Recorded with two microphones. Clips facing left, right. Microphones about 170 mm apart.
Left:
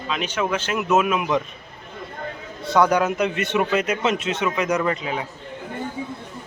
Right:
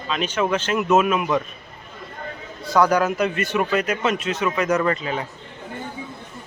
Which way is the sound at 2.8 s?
20° left (ahead or behind).